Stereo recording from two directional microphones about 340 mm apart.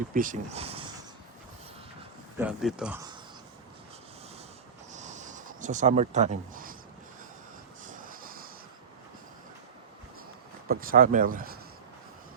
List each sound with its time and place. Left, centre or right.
0.1 s speech: right
2.4 s speech: centre
4.9 s a sound: right
7.9 s vehicle: right
10.7 s speech: right